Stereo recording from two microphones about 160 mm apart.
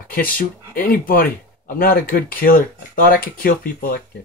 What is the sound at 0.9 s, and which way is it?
Speech, 65° left (ahead or behind).